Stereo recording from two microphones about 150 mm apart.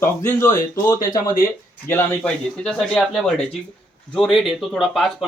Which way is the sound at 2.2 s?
5° left (ahead or behind).